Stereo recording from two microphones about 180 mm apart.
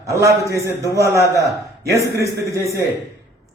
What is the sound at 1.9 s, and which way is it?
Speech, 15° right (ahead or behind).